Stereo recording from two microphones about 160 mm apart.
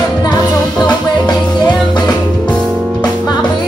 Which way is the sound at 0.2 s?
25° left (ahead or behind).